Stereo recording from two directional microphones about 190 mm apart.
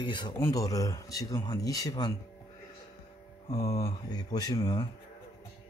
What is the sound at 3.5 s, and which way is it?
Speech, 15° left (ahead or behind).